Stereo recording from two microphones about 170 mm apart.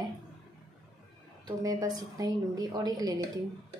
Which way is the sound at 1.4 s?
20° right (ahead or behind).